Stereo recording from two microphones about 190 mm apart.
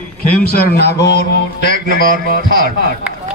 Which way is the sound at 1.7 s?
45° right (ahead or behind).